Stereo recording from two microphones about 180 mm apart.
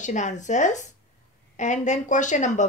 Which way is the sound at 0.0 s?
40° left (ahead or behind).